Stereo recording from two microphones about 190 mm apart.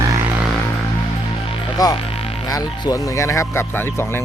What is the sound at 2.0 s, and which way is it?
Music, 30° left (ahead or behind).